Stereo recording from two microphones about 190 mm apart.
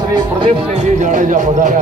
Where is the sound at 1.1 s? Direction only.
40° right (ahead or behind).